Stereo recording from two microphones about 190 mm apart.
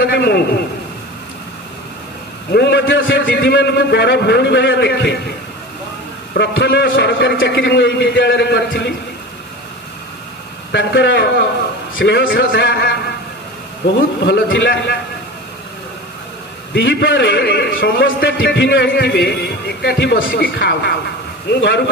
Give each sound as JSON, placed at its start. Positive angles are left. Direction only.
{"t": 0.0, "sound": "a man's voice", "side_deg": 60}
{"t": 2.5, "sound": "a man's voice", "side_deg": 65}
{"t": 3.3, "sound": "a man's voice", "side_deg": 60}
{"t": 6.3, "sound": "a man's voice", "side_deg": 60}
{"t": 10.7, "sound": "a man's voice", "side_deg": 65}
{"t": 12.3, "sound": "speech", "side_deg": 50}
{"t": 12.5, "sound": "a man's voice", "side_deg": 60}
{"t": 14.2, "sound": "a man's voice", "side_deg": 65}
{"t": 16.7, "sound": "a man's voice", "side_deg": 70}